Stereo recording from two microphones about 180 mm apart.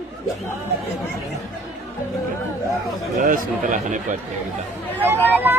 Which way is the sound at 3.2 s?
50° right (ahead or behind).